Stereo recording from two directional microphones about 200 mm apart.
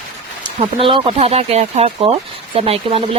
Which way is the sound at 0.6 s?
25° right (ahead or behind).